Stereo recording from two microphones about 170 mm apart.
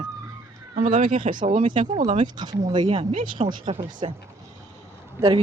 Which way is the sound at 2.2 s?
25° right (ahead or behind).